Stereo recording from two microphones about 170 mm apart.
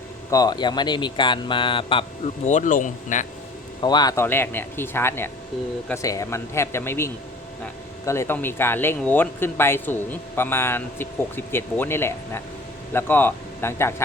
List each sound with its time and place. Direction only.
0.3 s speech: 20° left (ahead or behind); by 3.2 s 45° left (ahead or behind)
3.8 s speech: 25° left (ahead or behind)